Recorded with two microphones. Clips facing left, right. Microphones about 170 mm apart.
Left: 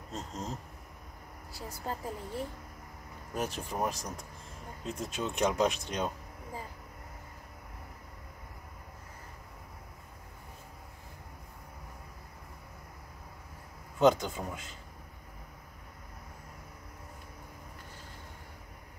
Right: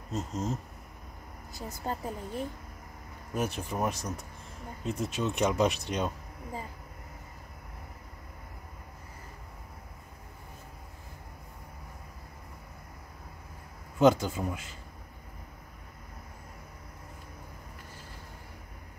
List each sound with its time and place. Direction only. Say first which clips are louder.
0.1 s speech: right 6 dB; 5° right (ahead or behind)
1.9 s speech: right 2 dB; 15° right (ahead or behind)
3.3 s speech: right 2 dB; centre (ahead or behind)
13.9 s speech: right 2 dB; 10° right (ahead or behind)